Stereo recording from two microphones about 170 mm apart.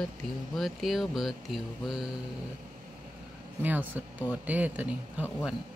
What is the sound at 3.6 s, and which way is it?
Speech, 10° right (ahead or behind).